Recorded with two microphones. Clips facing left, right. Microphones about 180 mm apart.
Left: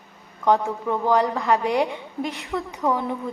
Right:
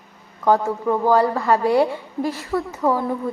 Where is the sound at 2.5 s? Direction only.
5° right (ahead or behind).